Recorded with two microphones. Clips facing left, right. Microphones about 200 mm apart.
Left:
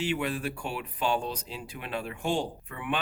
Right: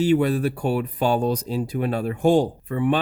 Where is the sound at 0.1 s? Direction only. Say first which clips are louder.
Right 11 dB; 40° right (ahead or behind).